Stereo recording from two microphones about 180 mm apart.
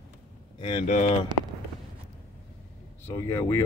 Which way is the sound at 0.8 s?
40° left (ahead or behind).